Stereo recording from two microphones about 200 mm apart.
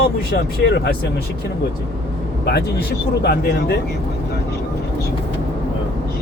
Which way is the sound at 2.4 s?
55° left (ahead or behind).